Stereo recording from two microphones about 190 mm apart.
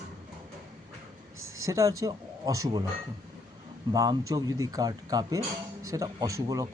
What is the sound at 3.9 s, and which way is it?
Speech, 20° right (ahead or behind).